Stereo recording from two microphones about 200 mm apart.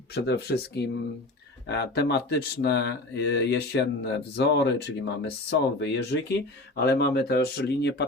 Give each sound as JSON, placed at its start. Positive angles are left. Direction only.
{"t": 0.1, "sound": "speech", "side_deg": 55}